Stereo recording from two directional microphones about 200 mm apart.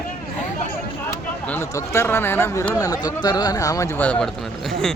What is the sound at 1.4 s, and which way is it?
Speech, 10° left (ahead or behind).